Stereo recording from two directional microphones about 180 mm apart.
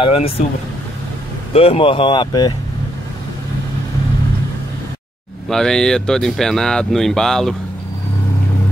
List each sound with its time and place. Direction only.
0.0 s speech: 30° left (ahead or behind)
1.5 s speech: 35° left (ahead or behind)
5.5 s speech: 5° left (ahead or behind)